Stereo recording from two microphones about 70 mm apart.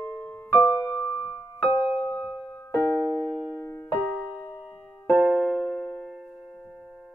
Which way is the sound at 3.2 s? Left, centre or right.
Centre.